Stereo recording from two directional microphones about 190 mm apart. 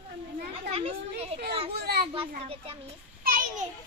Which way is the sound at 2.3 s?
30° right (ahead or behind).